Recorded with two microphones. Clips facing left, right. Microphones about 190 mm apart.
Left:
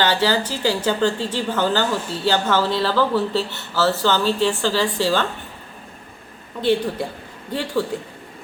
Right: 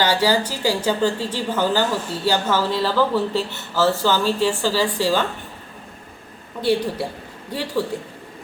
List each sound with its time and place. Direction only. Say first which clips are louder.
0.0 s a woman's voice: right 1 dB; 10° right (ahead or behind)
6.6 s a woman's voice: left 1 dB; 5° right (ahead or behind)